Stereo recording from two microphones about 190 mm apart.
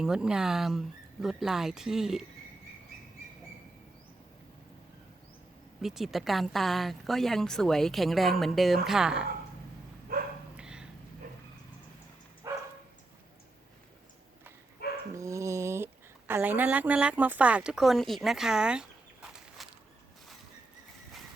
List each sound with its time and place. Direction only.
0.0 s a woman's voice: 5° right (ahead or behind)
5.8 s a woman's voice: centre (ahead or behind)
10.1 s dog: 50° right (ahead or behind)
10.6 s a sound: 5° right (ahead or behind)
12.4 s dog: 20° right (ahead or behind)
15.1 s a sound: 15° right (ahead or behind)